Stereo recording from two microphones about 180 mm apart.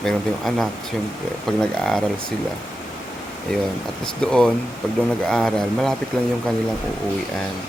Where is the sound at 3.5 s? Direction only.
5° left (ahead or behind).